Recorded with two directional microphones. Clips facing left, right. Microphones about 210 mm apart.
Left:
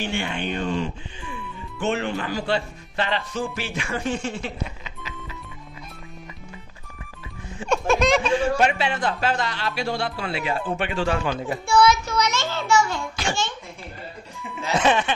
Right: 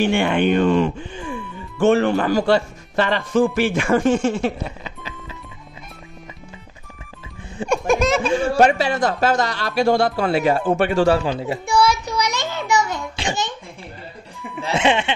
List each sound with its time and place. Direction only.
0.0 s speech: 60° right (ahead or behind); by 5.1 s 35° right (ahead or behind)
7.7 s a sound: 15° right (ahead or behind)
8.4 s speech: 45° right (ahead or behind)
11.5 s a child's voice: 15° right (ahead or behind)
14.6 s speech: 25° right (ahead or behind)